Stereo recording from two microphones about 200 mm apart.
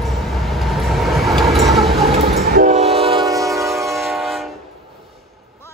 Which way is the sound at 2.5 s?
35° right (ahead or behind).